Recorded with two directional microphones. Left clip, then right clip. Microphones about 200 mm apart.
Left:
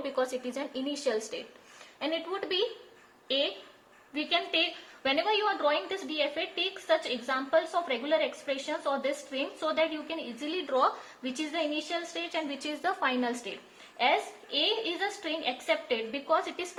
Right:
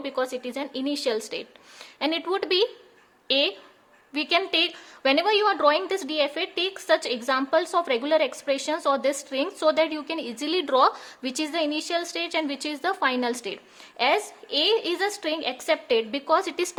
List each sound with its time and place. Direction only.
0.0 s a woman's voice: 30° right (ahead or behind); by 16.6 s 45° right (ahead or behind)